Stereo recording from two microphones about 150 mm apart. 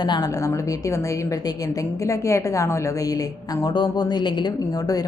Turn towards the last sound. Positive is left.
turn(degrees=25)  # may be behind; listen again after turning